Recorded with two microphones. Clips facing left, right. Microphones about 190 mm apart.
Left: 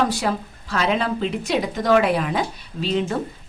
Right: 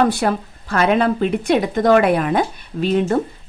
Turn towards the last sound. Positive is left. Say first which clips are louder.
# right 5 dB
turn(degrees=-50)  # may be behind; listen again after turning